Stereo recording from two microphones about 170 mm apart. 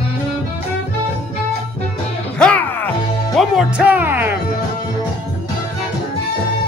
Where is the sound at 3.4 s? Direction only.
5° right (ahead or behind).